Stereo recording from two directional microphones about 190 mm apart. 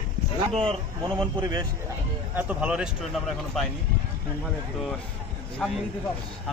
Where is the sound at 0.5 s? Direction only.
30° right (ahead or behind).